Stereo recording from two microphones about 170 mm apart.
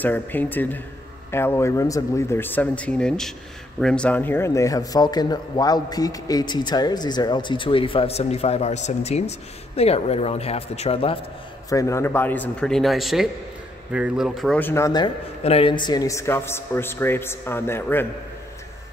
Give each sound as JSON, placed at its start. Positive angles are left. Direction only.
{"t": 0.0, "sound": "speech", "side_deg": 10}
{"t": 11.7, "sound": "speech", "side_deg": 20}
{"t": 14.6, "sound": "speech", "side_deg": 15}
{"t": 15.4, "sound": "speech", "side_deg": 35}